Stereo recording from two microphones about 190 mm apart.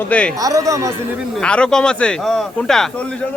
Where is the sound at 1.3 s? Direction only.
5° left (ahead or behind).